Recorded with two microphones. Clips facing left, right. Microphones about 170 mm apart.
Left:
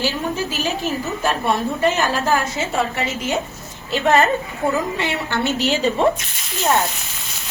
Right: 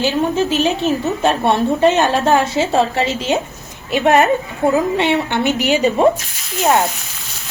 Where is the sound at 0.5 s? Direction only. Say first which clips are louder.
Right 7 dB; 25° right (ahead or behind).